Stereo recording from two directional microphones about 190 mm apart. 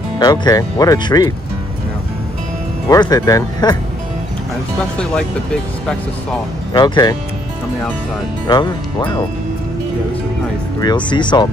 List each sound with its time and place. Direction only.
0.2 s speech: 20° left (ahead or behind)
2.9 s speech: 20° left (ahead or behind)
4.7 s speech: 5° left (ahead or behind)
6.7 s speech: 20° left (ahead or behind)
8.5 s speech: 20° left (ahead or behind)
11.1 s speech: 25° left (ahead or behind)